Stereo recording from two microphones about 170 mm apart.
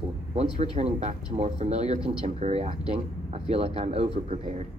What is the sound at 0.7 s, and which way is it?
Speech, 40° right (ahead or behind).